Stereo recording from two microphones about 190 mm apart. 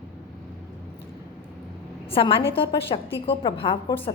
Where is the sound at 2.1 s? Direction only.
30° left (ahead or behind).